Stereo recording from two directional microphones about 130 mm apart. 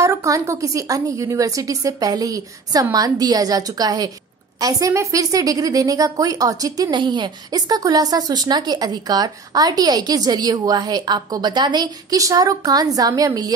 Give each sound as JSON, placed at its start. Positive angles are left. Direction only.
{"t": 0.0, "sound": "a woman's voice", "side_deg": -25}